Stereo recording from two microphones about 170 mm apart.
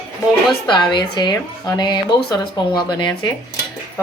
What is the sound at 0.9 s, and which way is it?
Speech, 25° left (ahead or behind).